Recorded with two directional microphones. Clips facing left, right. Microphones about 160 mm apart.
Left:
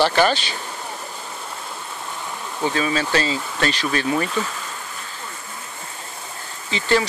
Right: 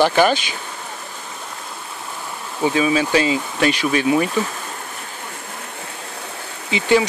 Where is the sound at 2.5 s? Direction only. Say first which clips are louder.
Right 5 dB; 10° right (ahead or behind).